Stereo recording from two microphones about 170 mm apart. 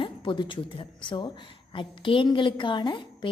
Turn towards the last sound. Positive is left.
turn(degrees=30)  # may be behind; listen again after turning